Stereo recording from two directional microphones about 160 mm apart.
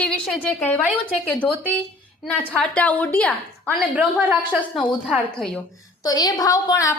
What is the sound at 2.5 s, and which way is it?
A woman's voice, 10° left (ahead or behind).